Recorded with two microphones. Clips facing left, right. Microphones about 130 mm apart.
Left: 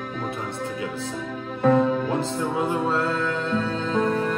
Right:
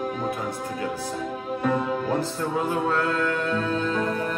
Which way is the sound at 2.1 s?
20° left (ahead or behind).